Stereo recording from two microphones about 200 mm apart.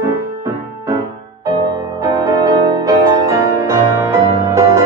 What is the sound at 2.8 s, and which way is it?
Music, 15° right (ahead or behind).